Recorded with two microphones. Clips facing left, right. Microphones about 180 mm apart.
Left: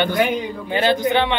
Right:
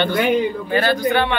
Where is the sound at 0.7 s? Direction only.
20° left (ahead or behind).